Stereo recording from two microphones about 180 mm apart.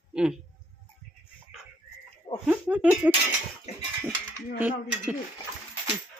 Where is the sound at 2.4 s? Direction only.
10° right (ahead or behind).